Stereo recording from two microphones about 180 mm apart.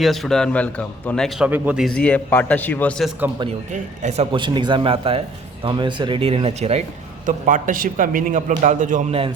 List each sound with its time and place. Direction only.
0.0 s a man's voice: centre (ahead or behind)
1.5 s a man's voice: 10° right (ahead or behind); by 2.9 s 10° left (ahead or behind)
3.2 s a man's voice: 10° right (ahead or behind)
3.7 s a man's voice: 40° right (ahead or behind)